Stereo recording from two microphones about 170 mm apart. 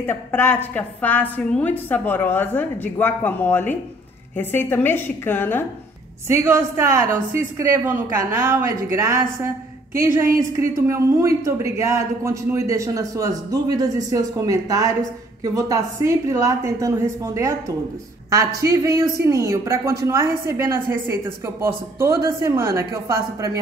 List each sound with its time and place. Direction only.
0.0 s a woman's voice: 15° left (ahead or behind)
6.2 s a man's voice: 15° right (ahead or behind)